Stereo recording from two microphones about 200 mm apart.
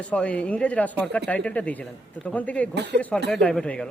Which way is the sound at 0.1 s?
5° left (ahead or behind).